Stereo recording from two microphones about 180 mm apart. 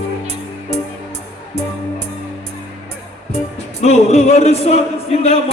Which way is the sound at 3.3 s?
35° left (ahead or behind).